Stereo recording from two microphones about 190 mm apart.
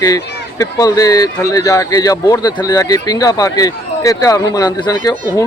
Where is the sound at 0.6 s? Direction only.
20° left (ahead or behind).